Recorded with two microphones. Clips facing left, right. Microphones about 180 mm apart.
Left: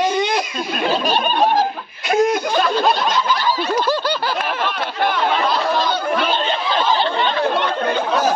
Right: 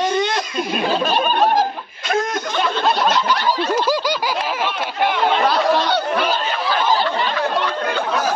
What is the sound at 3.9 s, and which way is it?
Snicker, 10° right (ahead or behind).